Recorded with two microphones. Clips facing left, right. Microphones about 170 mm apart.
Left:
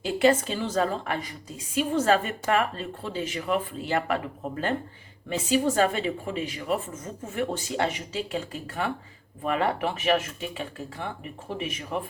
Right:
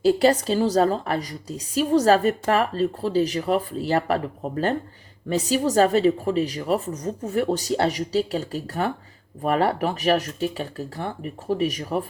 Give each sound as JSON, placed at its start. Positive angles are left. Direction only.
{"t": 0.0, "sound": "a woman's voice", "side_deg": -35}